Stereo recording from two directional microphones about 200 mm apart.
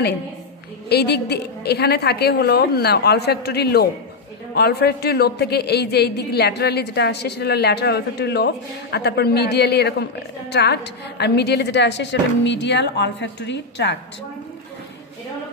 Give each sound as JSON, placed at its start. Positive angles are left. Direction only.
{"t": 0.8, "sound": "a woman's voice", "side_deg": 55}